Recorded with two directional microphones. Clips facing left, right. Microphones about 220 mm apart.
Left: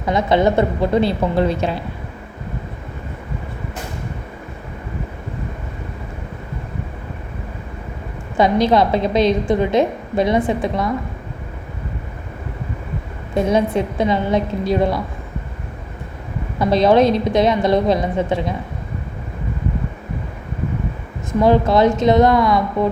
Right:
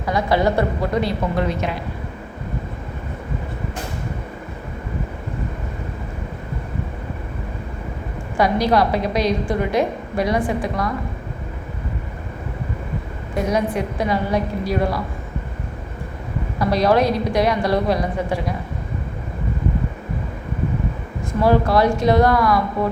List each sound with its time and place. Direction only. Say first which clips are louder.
0.0 s a woman's voice: left 3 dB; 20° left (ahead or behind)
8.4 s a woman's voice: left 3 dB; 25° left (ahead or behind)
13.3 s a woman's voice: left 4 dB; 25° left (ahead or behind)
16.6 s a woman's voice: left 4 dB; 25° left (ahead or behind)
21.4 s a woman's voice: left 2 dB; 20° left (ahead or behind)